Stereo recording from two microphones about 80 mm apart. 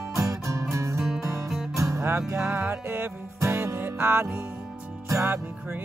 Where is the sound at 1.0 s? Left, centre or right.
Centre.